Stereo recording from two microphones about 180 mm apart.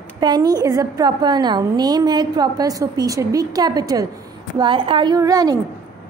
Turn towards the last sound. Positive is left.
turn(degrees=-20)  # may be behind; listen again after turning